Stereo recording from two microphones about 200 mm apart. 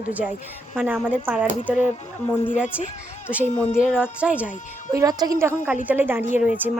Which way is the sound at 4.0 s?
5° right (ahead or behind).